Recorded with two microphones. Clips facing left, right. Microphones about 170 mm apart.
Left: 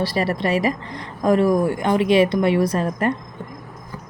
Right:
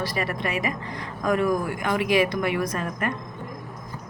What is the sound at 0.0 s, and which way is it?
A woman's voice, 30° left (ahead or behind).